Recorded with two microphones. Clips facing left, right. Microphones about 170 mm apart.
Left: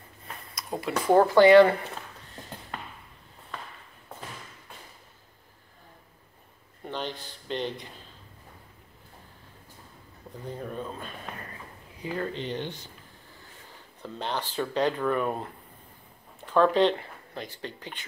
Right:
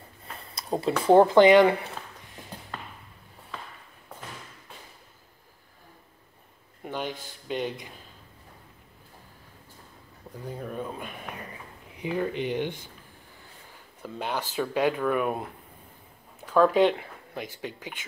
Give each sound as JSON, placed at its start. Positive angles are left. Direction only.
{"t": 0.6, "sound": "speech", "side_deg": -30}
{"t": 6.8, "sound": "a sound", "side_deg": -10}
{"t": 7.4, "sound": "speech", "side_deg": -10}
{"t": 10.3, "sound": "speech", "side_deg": 0}
{"t": 14.0, "sound": "speech", "side_deg": -10}
{"t": 16.3, "sound": "a sound", "side_deg": -5}
{"t": 17.6, "sound": "speech", "side_deg": -10}